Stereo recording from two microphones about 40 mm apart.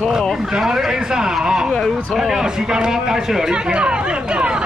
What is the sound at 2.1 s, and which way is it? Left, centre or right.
Speech, centre.